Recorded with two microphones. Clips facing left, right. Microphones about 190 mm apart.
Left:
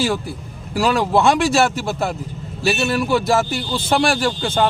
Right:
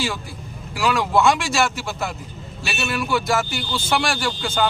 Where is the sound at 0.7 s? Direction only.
35° left (ahead or behind).